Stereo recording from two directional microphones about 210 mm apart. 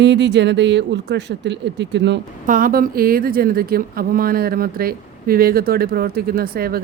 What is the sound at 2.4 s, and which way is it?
Speech, 40° right (ahead or behind).